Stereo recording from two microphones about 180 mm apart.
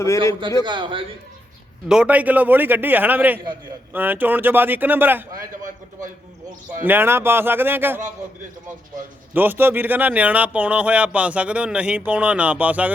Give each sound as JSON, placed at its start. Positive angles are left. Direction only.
{"t": 0.6, "sound": "a man's voice", "side_deg": -25}
{"t": 1.9, "sound": "speech", "side_deg": -5}
{"t": 6.8, "sound": "speech", "side_deg": -10}
{"t": 9.3, "sound": "speech", "side_deg": -10}